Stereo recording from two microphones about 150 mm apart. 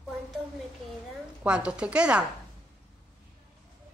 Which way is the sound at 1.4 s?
5° right (ahead or behind).